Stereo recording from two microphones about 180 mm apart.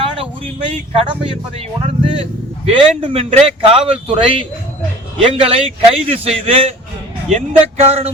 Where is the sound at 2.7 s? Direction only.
30° right (ahead or behind).